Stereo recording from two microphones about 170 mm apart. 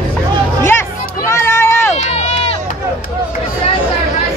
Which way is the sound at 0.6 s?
15° left (ahead or behind).